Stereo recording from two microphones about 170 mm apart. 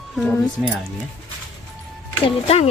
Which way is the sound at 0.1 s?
Centre (ahead or behind).